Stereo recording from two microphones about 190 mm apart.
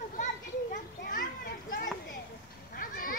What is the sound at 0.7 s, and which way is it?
A child's voice, 45° left (ahead or behind).